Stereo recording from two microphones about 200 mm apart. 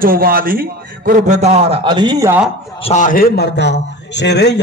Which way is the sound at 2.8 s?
40° left (ahead or behind).